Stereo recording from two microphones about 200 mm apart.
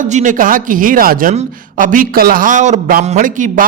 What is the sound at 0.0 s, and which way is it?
Speech, 40° right (ahead or behind).